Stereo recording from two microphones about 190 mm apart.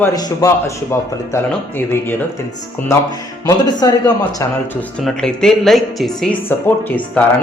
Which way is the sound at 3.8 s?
20° left (ahead or behind).